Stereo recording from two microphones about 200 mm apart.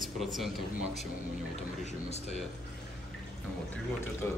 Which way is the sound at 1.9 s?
35° left (ahead or behind).